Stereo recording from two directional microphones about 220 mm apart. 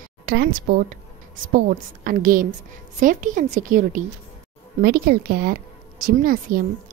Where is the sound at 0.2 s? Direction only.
45° right (ahead or behind).